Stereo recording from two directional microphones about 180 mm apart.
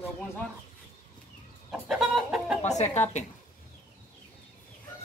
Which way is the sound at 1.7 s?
5° right (ahead or behind).